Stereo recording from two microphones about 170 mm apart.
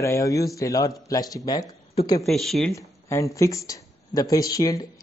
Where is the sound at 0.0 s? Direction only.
20° left (ahead or behind).